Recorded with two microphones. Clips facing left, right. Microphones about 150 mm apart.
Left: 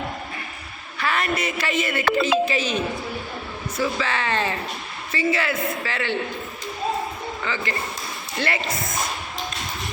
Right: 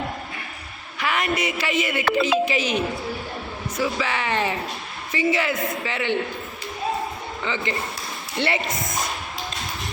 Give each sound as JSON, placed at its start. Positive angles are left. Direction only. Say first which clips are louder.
{"t": 0.9, "sound": "a woman's voice", "louder": "even", "side_deg": -15}
{"t": 7.4, "sound": "a man's voice", "louder": "right 2 dB", "side_deg": -20}